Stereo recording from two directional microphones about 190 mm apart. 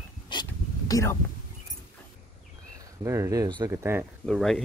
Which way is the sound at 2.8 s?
15° right (ahead or behind).